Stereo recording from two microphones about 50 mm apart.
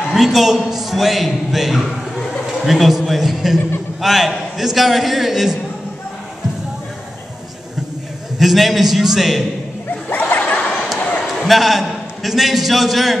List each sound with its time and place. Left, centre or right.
0.1 s a man's voice: centre
1.9 s a man's voice: centre
8.4 s a man's voice: centre
10.0 s a sound: left
11.4 s a man's voice: centre